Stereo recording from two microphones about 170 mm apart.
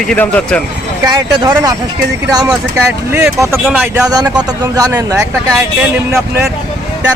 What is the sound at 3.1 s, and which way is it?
Speech, 15° right (ahead or behind).